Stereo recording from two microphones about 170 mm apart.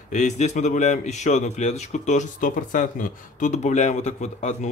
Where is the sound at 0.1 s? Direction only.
45° left (ahead or behind).